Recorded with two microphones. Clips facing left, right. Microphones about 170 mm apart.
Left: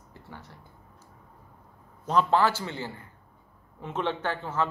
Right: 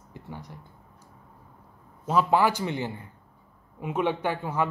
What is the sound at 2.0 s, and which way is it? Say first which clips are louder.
Speech: right 1 dB; 10° right (ahead or behind).